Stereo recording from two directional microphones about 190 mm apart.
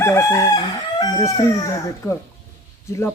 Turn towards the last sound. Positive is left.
turn(degrees=15)  # may be behind; listen again after turning